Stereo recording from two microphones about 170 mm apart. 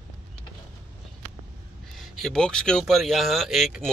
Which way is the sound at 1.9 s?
Centre (ahead or behind).